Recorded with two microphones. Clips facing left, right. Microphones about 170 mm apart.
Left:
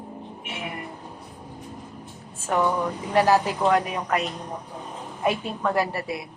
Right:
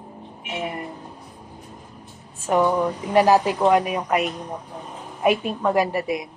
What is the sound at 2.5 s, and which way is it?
Speech, 15° right (ahead or behind).